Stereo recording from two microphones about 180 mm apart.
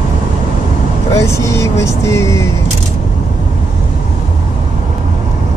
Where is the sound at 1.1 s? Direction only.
15° left (ahead or behind).